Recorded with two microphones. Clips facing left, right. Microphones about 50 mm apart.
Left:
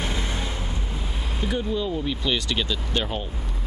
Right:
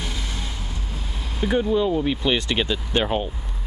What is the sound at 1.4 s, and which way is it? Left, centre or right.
Speech, centre.